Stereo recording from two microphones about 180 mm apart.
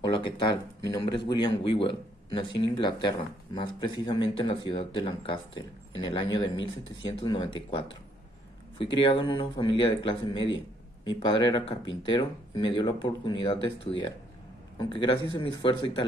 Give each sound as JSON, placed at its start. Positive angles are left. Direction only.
{"t": 0.0, "sound": "speech", "side_deg": 25}
{"t": 14.8, "sound": "speech", "side_deg": 25}